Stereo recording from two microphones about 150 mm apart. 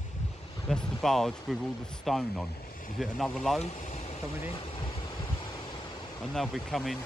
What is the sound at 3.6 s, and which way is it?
Speech, 50° left (ahead or behind).